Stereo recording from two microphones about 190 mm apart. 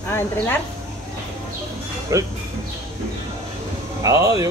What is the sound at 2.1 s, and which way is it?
Speech, 15° right (ahead or behind).